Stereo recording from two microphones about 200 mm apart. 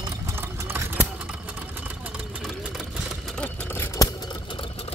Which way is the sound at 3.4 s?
15° left (ahead or behind).